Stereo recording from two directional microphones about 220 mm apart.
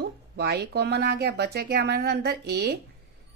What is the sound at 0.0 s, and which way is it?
Speech, 45° right (ahead or behind).